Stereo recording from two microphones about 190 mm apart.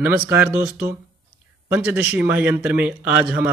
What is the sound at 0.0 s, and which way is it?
Speech, 10° right (ahead or behind).